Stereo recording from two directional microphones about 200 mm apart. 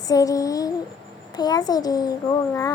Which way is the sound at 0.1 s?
15° left (ahead or behind).